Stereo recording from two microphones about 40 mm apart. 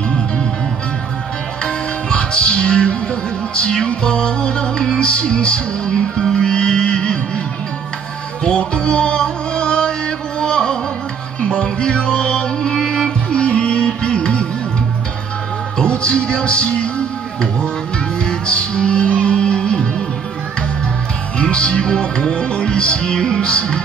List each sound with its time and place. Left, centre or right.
1.6 s music: left
8.5 s music: left
15.8 s music: left
18.2 s music: left
21.4 s music: left